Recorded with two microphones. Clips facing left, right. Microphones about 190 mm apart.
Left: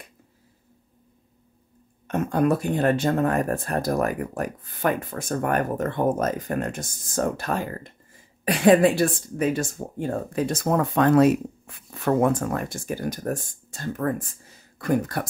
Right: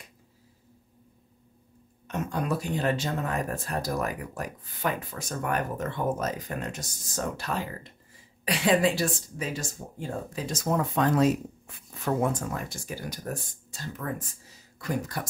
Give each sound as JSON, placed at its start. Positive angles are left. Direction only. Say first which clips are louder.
{"t": 2.0, "sound": "speech", "louder": "left 8 dB", "side_deg": 55}